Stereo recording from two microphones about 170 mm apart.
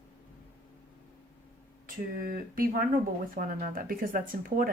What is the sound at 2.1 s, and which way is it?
Speech, 55° right (ahead or behind).